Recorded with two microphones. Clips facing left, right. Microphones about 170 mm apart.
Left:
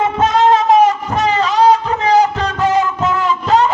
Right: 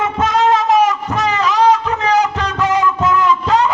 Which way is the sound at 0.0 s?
30° left (ahead or behind).